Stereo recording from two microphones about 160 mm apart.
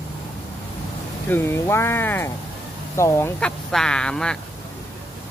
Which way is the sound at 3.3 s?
5° left (ahead or behind).